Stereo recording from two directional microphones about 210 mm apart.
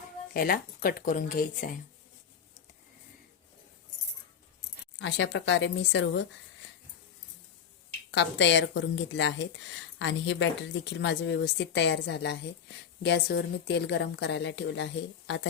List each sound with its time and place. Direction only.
0.3 s speech: 45° left (ahead or behind)
4.9 s speech: 60° left (ahead or behind)
8.1 s speech: 60° left (ahead or behind)